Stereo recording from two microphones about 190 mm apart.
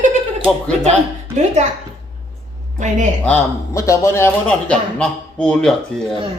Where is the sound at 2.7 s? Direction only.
40° right (ahead or behind).